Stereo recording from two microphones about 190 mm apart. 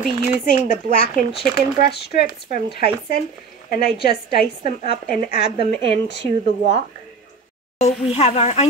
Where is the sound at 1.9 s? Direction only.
60° left (ahead or behind).